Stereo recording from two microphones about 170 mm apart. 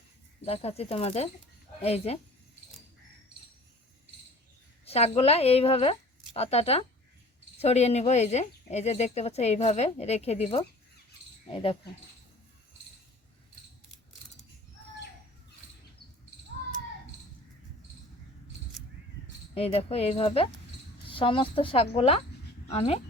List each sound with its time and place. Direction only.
0.4 s speech: 35° left (ahead or behind)
4.9 s speech: 40° left (ahead or behind)
19.5 s speech: 35° left (ahead or behind)